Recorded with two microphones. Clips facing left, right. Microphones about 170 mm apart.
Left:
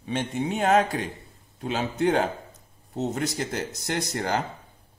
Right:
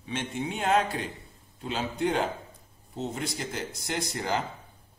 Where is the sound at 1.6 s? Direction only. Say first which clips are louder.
Left 4 dB; 55° left (ahead or behind).